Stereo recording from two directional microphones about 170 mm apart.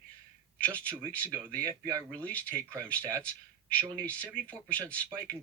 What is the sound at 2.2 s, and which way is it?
Speech, 10° left (ahead or behind).